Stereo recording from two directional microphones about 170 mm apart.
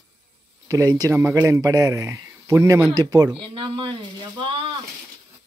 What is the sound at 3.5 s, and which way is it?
Speech, 35° right (ahead or behind).